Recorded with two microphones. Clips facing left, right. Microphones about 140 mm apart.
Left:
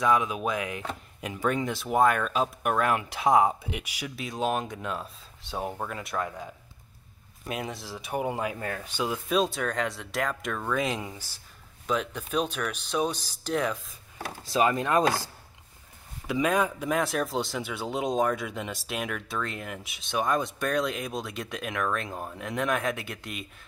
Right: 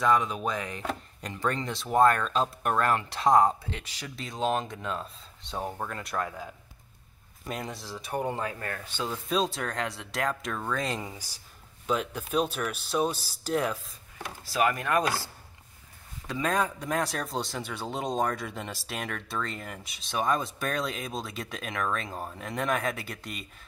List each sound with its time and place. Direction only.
0.0 s speech: 5° left (ahead or behind)
11.1 s speech: 10° right (ahead or behind)
14.1 s speech: 25° left (ahead or behind)
16.3 s speech: 10° left (ahead or behind)